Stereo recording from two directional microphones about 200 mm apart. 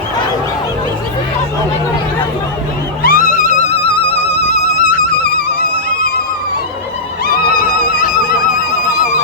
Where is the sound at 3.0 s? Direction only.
45° left (ahead or behind).